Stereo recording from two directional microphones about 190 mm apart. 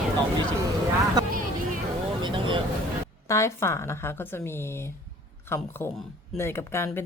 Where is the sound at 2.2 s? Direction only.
25° right (ahead or behind).